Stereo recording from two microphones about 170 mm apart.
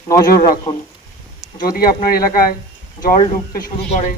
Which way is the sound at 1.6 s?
60° left (ahead or behind).